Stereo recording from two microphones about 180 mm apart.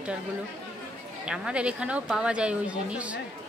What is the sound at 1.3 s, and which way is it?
A woman's voice, 5° right (ahead or behind).